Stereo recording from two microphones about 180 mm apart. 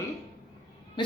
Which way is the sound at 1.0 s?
25° left (ahead or behind).